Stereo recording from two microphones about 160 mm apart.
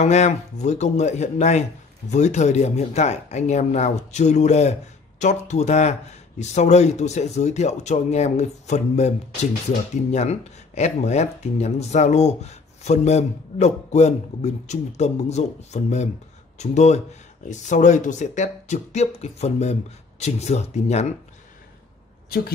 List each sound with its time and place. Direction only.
0.0 s speech: 45° left (ahead or behind)